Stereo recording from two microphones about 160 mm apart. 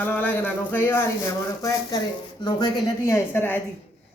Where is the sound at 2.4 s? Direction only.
20° left (ahead or behind).